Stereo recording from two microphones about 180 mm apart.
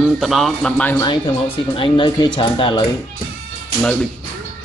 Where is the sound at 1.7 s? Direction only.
25° left (ahead or behind).